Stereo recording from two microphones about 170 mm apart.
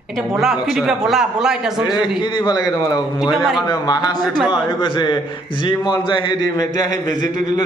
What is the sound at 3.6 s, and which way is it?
A man's voice, 25° left (ahead or behind).